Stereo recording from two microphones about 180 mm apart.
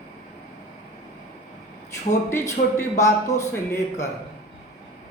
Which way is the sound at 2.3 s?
15° left (ahead or behind).